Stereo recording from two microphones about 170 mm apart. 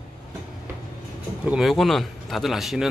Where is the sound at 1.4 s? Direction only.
5° right (ahead or behind).